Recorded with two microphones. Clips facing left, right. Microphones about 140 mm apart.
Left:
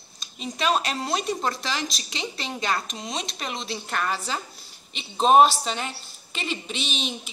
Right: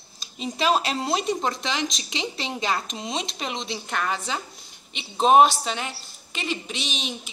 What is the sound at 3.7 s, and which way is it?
A woman's voice, 5° right (ahead or behind).